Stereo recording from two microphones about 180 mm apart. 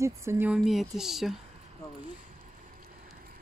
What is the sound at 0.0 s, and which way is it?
Speech, 15° right (ahead or behind).